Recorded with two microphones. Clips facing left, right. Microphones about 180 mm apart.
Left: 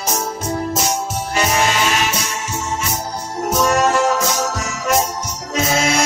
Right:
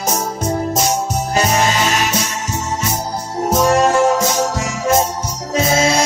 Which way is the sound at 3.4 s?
30° right (ahead or behind).